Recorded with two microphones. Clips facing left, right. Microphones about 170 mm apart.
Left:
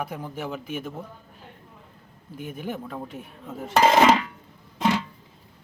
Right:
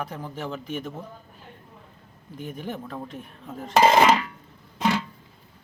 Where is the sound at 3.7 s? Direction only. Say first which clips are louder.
Even; 10° right (ahead or behind).